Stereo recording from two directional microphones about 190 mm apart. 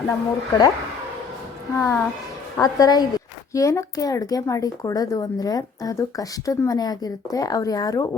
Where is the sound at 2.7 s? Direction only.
20° left (ahead or behind).